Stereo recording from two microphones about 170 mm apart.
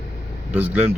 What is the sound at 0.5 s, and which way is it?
Speech, 10° right (ahead or behind).